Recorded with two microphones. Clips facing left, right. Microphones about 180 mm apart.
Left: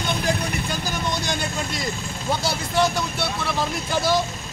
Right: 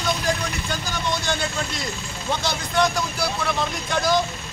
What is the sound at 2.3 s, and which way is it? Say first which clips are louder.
Speech: even; 5° left (ahead or behind).